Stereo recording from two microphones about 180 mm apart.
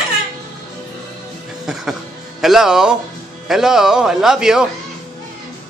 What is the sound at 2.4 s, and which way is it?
A man's voice, centre (ahead or behind).